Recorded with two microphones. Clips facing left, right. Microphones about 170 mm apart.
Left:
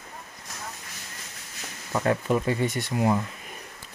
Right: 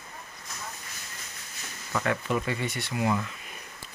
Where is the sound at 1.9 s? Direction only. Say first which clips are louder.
Left 4 dB; 30° left (ahead or behind).